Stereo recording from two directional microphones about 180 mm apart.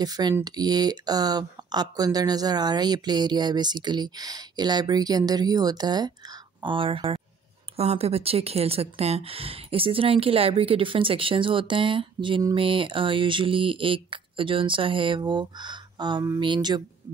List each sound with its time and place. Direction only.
0.0 s speech: 20° right (ahead or behind)